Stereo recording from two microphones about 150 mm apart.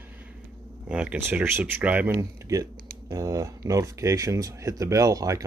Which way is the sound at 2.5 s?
25° right (ahead or behind).